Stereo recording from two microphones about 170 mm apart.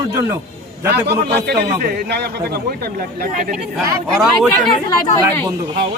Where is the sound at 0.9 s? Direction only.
75° right (ahead or behind).